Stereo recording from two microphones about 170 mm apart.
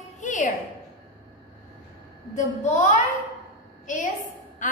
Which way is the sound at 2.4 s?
45° left (ahead or behind).